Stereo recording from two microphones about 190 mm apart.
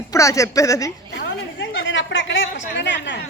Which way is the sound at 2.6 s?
70° left (ahead or behind).